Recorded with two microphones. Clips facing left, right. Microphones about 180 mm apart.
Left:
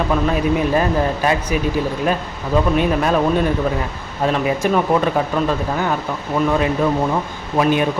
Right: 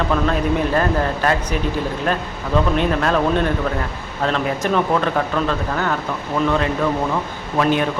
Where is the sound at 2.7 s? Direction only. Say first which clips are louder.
Left 2 dB; 10° left (ahead or behind).